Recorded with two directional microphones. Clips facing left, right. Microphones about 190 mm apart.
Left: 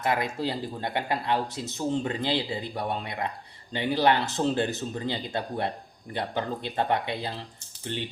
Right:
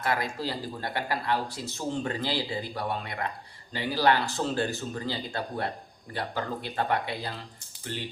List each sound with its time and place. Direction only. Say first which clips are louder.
0.0 s speech: left 2 dB; 20° left (ahead or behind)